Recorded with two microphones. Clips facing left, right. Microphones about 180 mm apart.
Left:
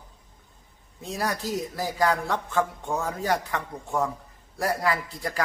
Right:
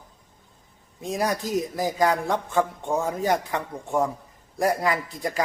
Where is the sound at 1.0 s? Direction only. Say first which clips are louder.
Right 4 dB; 15° right (ahead or behind).